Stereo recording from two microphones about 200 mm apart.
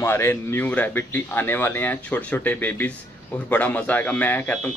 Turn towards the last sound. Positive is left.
turn(degrees=10)  # may be behind; listen again after turning